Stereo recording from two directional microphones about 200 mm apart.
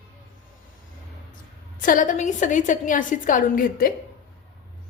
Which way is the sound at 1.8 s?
40° left (ahead or behind).